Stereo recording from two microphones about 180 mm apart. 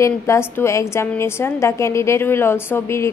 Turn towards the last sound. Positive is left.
turn(degrees=15)  # may be behind; listen again after turning